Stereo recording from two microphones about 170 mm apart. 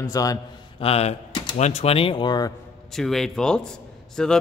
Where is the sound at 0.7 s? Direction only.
35° left (ahead or behind).